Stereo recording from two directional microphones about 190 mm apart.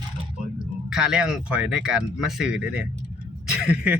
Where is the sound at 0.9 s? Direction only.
5° right (ahead or behind).